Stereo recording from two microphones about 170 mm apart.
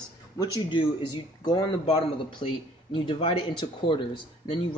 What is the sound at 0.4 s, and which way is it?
Speech, 30° left (ahead or behind).